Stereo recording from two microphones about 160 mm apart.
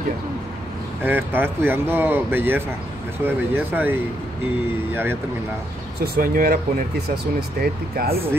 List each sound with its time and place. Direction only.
1.0 s speech: 10° right (ahead or behind)
6.1 s speech: 65° right (ahead or behind)
7.6 s speech: 70° right (ahead or behind)